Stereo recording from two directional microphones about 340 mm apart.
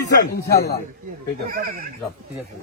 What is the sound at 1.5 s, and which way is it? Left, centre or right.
Speech, right.